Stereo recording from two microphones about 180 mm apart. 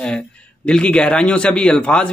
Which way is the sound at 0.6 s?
5° left (ahead or behind).